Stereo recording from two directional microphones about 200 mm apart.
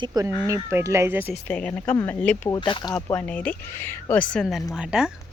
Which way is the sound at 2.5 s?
25° left (ahead or behind).